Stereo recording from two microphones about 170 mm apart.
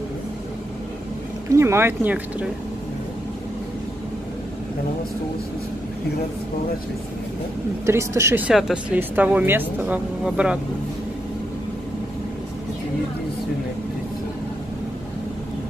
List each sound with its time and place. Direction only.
1.5 s speech: 15° right (ahead or behind)
7.8 s speech: 15° right (ahead or behind)
8.5 s speech: 5° right (ahead or behind)